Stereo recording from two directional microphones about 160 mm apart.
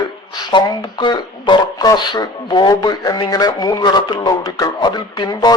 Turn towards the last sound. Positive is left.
turn(degrees=25)  # may be behind; listen again after turning